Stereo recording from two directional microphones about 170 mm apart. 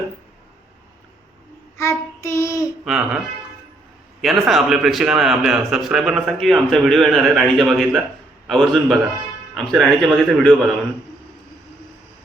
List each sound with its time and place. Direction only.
1.8 s child singing: 15° left (ahead or behind)
2.8 s a man's voice: 5° right (ahead or behind)
4.2 s a man's voice: centre (ahead or behind)